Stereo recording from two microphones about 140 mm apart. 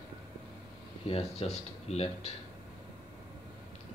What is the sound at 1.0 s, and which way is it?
Speech, 45° left (ahead or behind).